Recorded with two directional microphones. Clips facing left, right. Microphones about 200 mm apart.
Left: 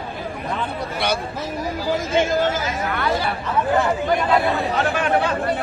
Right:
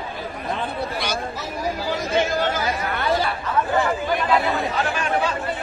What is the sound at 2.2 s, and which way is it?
Chatter, 45° left (ahead or behind).